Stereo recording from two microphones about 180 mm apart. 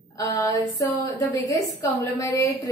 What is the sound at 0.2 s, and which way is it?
A woman's voice, 20° left (ahead or behind).